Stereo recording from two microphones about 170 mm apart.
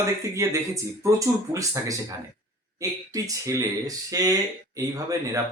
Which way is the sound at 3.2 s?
20° right (ahead or behind).